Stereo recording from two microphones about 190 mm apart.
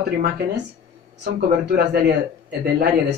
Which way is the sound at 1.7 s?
60° right (ahead or behind).